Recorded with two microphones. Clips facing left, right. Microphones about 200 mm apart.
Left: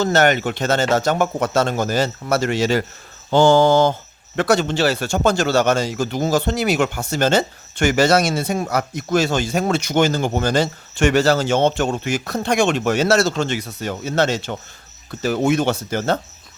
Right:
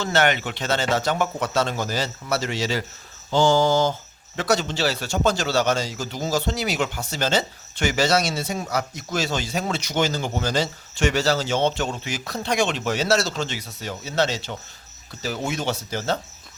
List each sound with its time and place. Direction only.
0.0 s a man's voice: 40° left (ahead or behind)